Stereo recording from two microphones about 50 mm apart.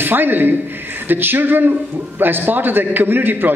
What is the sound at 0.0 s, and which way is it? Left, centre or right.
A man's voice, right.